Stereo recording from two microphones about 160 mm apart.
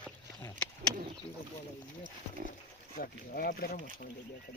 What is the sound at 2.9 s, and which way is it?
Speech, 70° left (ahead or behind).